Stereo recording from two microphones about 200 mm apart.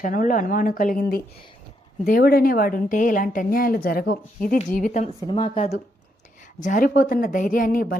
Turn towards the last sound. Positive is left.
turn(degrees=45)  # may be behind; listen again after turning